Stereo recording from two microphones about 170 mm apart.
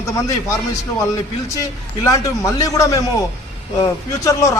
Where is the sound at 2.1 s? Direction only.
20° left (ahead or behind).